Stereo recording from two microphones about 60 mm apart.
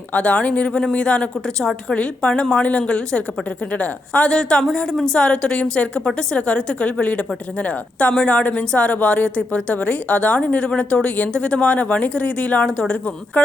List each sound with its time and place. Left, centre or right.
0.1 s a woman's voice: left